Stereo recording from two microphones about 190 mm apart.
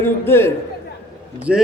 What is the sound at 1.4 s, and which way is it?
Speech, 5° right (ahead or behind).